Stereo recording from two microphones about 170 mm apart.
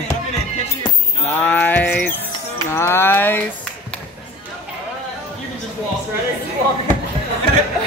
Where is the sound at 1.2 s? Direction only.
10° left (ahead or behind).